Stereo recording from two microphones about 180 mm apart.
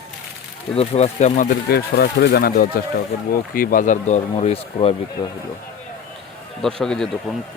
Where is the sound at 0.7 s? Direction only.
35° left (ahead or behind).